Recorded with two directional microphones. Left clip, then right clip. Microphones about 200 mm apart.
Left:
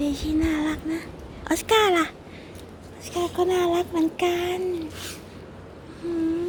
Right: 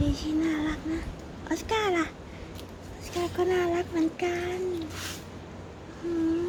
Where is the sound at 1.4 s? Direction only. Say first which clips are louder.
Left 8 dB; 35° left (ahead or behind).